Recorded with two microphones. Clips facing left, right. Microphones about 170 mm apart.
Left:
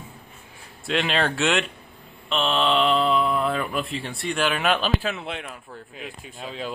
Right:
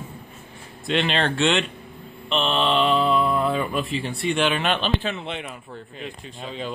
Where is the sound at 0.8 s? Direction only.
5° left (ahead or behind).